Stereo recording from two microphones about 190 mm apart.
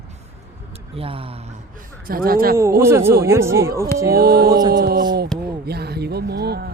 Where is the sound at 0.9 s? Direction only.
30° right (ahead or behind).